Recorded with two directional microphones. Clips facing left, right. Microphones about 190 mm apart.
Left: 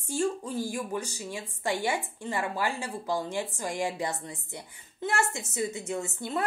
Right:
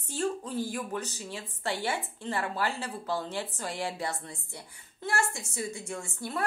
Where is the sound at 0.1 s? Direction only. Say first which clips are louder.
Left 2 dB; 10° left (ahead or behind).